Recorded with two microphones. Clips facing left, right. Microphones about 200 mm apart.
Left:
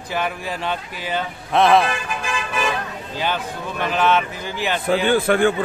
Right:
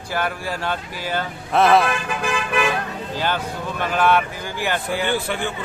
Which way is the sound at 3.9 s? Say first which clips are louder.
Even; 10° right (ahead or behind).